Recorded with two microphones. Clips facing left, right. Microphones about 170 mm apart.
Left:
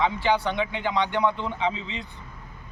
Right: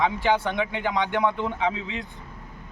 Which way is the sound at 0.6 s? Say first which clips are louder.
Even; 10° right (ahead or behind).